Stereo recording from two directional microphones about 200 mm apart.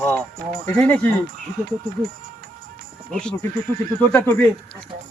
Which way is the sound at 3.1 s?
5° left (ahead or behind).